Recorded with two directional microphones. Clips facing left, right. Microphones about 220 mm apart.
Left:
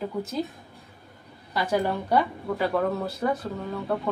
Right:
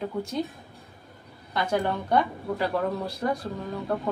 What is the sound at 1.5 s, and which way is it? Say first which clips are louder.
A woman's voice: left 1 dB; 5° left (ahead or behind).